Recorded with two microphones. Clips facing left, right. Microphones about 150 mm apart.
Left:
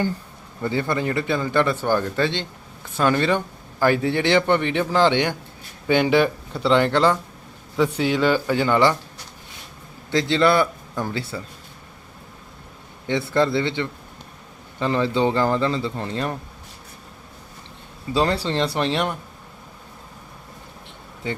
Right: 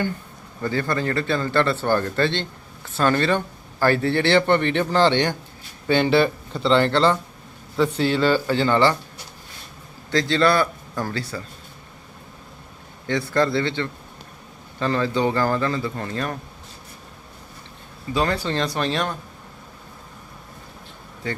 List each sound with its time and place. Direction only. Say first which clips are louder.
0.6 s speech: left 1 dB; 20° left (ahead or behind)
10.1 s a man's voice: left 1 dB; 20° left (ahead or behind)
13.1 s speech: left 1 dB; 20° left (ahead or behind)
18.1 s speech: left 2 dB; 30° left (ahead or behind)